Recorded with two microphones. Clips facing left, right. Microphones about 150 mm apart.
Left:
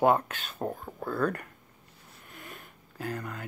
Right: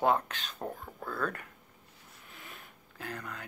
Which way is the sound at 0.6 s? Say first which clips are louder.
Left 6 dB; 20° left (ahead or behind).